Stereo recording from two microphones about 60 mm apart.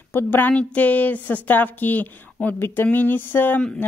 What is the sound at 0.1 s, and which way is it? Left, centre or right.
A woman's voice, left.